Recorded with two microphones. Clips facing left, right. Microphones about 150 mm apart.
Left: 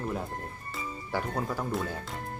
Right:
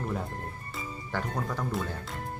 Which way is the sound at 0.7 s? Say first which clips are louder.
Left 2 dB; 10° left (ahead or behind).